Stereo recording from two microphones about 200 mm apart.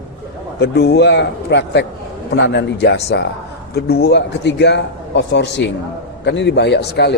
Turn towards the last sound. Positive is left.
turn(degrees=55)  # may be behind; listen again after turning